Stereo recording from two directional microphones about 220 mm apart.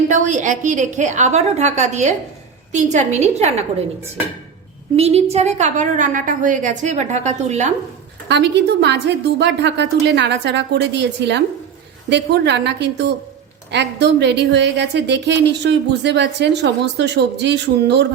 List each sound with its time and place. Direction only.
0.1 s a woman's voice: 35° right (ahead or behind)
4.9 s a woman's voice: 30° right (ahead or behind)
8.3 s a woman's voice: 50° right (ahead or behind)